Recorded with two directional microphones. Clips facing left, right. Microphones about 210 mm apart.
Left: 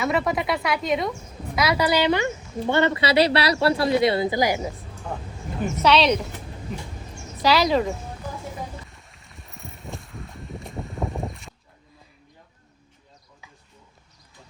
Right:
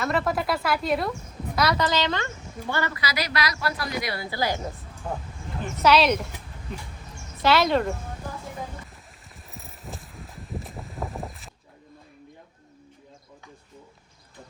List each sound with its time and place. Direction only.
0.0 s speech: centre (ahead or behind)
5.8 s speech: 5° right (ahead or behind)
7.4 s speech: centre (ahead or behind)
9.3 s a sound: centre (ahead or behind)